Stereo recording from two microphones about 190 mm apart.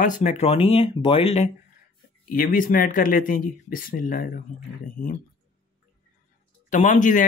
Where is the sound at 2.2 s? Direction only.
45° left (ahead or behind).